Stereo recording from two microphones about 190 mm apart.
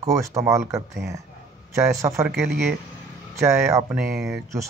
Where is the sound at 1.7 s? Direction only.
15° right (ahead or behind).